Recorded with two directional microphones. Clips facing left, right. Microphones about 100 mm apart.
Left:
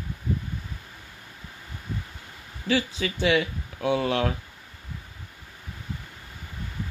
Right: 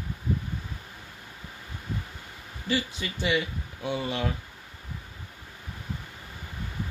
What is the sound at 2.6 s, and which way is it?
Speech, 90° left.